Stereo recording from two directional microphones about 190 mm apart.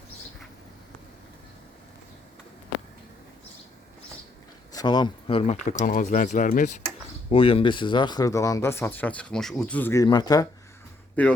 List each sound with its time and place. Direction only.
4.7 s speech: 20° left (ahead or behind); by 6.8 s 40° left (ahead or behind)
7.3 s speech: 30° left (ahead or behind)
11.2 s speech: 10° left (ahead or behind)